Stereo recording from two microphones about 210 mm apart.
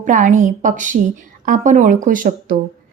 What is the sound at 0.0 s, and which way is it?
A woman's voice, 35° right (ahead or behind).